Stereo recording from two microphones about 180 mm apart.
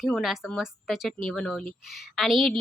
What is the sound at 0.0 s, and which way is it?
A woman's voice, centre (ahead or behind).